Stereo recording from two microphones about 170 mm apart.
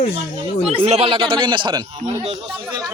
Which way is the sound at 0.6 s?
35° right (ahead or behind).